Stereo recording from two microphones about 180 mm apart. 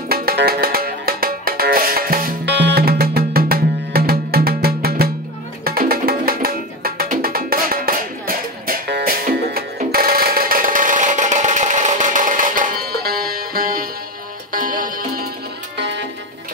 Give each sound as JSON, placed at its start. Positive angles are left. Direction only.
{"t": 0.1, "sound": "music", "side_deg": -55}
{"t": 9.8, "sound": "a sound", "side_deg": -55}
{"t": 14.5, "sound": "music", "side_deg": -50}